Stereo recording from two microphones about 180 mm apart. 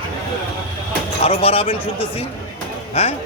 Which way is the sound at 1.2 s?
30° left (ahead or behind).